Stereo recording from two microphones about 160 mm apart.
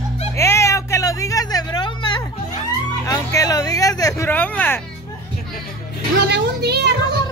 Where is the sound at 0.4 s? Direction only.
15° left (ahead or behind).